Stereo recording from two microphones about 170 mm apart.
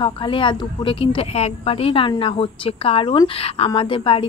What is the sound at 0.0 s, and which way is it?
Speech, 30° left (ahead or behind).